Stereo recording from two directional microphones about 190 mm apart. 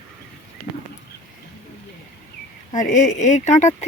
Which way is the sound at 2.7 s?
40° left (ahead or behind).